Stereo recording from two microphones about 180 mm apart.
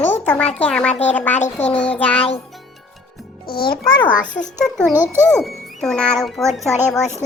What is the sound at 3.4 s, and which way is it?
Speech, 55° left (ahead or behind).